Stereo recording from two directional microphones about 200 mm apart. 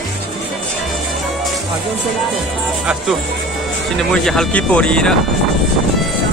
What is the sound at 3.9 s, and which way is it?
Speech, 5° left (ahead or behind).